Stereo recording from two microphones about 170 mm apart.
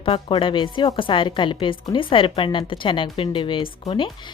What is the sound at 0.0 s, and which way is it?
A woman's voice, 30° left (ahead or behind).